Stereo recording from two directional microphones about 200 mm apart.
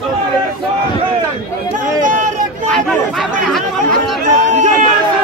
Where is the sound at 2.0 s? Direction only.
40° right (ahead or behind).